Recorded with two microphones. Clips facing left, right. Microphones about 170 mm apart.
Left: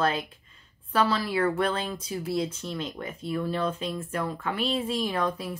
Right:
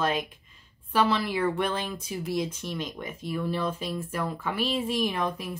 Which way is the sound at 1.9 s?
10° right (ahead or behind).